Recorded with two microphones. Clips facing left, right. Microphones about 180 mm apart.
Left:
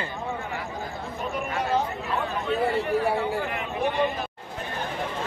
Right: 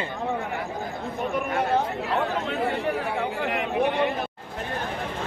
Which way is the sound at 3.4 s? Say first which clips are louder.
Right 4 dB; 75° right (ahead or behind).